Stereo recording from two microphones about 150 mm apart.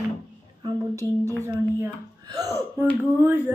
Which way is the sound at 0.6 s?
25° right (ahead or behind).